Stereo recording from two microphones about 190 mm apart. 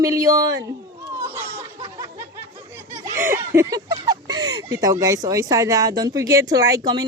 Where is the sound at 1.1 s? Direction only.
15° right (ahead or behind).